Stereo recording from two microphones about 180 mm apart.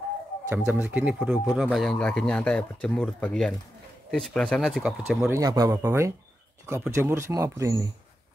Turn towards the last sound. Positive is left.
turn(degrees=-15)  # may be behind; listen again after turning